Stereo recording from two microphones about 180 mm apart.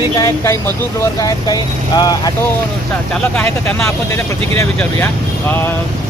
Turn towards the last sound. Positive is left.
turn(degrees=10)  # may be behind; listen again after turning